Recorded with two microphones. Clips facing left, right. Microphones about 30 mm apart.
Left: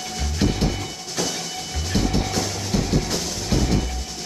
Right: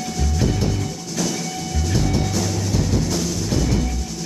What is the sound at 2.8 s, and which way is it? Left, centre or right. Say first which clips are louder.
Music: right 2 dB; left.